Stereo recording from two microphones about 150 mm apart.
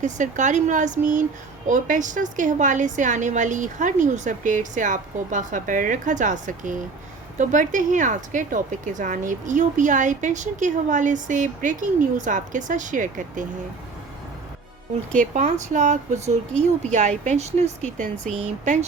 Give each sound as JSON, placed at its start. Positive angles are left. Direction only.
{"t": 0.0, "sound": "speech", "side_deg": -55}
{"t": 15.2, "sound": "speech", "side_deg": -50}